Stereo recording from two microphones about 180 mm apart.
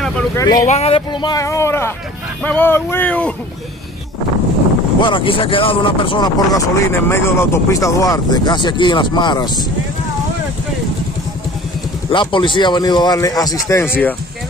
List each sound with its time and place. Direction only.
0.4 s speech: 20° left (ahead or behind)
0.7 s speech: 35° left (ahead or behind); by 3.3 s 5° left (ahead or behind)
5.0 s speech: 25° left (ahead or behind)
12.1 s speech: 25° left (ahead or behind); by 14.1 s 10° left (ahead or behind)